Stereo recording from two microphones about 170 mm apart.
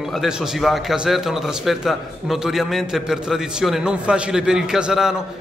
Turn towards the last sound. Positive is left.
turn(degrees=-5)  # may be behind; listen again after turning